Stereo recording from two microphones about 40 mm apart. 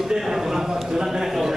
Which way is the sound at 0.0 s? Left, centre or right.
Centre.